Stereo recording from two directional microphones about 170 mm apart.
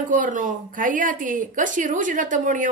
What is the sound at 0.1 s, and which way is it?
Speech, 50° right (ahead or behind).